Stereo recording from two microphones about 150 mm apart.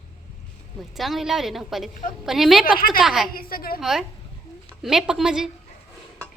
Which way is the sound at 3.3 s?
80° left.